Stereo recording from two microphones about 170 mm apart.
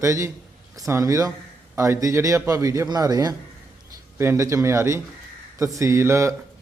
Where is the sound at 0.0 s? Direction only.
15° right (ahead or behind).